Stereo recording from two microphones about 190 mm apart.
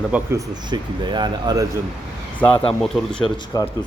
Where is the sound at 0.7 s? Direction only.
25° right (ahead or behind).